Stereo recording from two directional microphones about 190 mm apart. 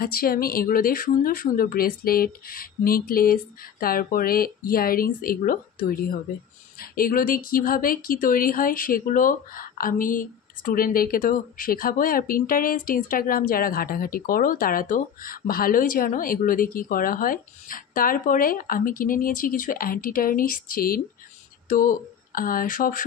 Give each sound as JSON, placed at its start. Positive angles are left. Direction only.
{"t": 0.0, "sound": "speech", "side_deg": 50}